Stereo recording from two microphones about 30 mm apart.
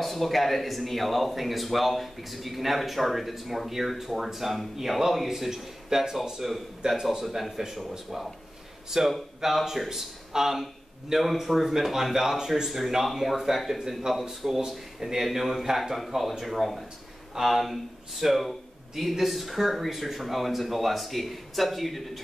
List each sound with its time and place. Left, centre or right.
0.0 s a man's voice: centre
6.4 s a man's voice: centre
8.9 s a man's voice: centre